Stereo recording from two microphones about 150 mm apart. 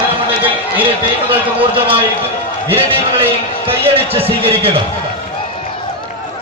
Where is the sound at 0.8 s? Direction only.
35° right (ahead or behind).